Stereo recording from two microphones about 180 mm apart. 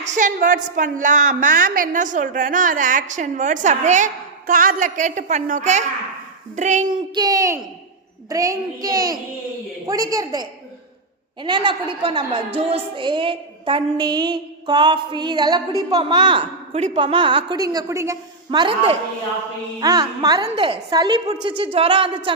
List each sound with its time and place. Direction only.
0.0 s a woman's voice: 45° right (ahead or behind)
7.1 s a woman's voice: 20° right (ahead or behind)